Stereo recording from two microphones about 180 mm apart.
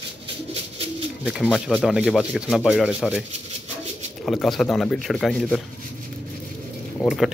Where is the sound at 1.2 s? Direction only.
5° right (ahead or behind).